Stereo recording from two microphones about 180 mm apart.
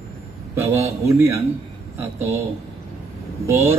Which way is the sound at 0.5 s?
15° right (ahead or behind).